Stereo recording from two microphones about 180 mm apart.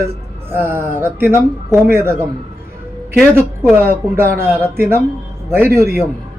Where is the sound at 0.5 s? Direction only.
10° right (ahead or behind).